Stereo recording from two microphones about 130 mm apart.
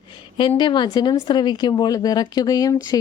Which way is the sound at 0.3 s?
35° left (ahead or behind).